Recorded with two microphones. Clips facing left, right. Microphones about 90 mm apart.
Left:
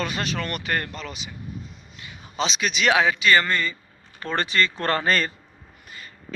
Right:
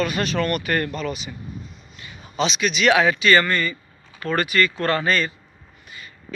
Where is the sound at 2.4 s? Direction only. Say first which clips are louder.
Right 3 dB; 30° left (ahead or behind).